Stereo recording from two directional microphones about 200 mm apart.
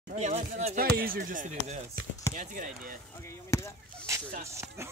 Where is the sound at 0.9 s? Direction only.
45° right (ahead or behind).